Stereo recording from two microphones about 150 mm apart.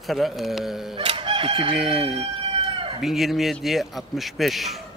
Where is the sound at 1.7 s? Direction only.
5° right (ahead or behind).